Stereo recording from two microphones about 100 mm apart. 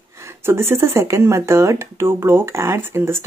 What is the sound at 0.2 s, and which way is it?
Speech, 25° right (ahead or behind).